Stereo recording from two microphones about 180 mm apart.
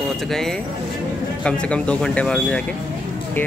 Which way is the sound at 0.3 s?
Centre (ahead or behind).